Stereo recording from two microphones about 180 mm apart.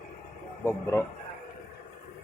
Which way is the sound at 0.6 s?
15° left (ahead or behind).